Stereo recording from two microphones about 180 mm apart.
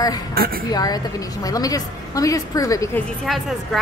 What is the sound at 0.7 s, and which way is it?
A woman's voice, 20° left (ahead or behind).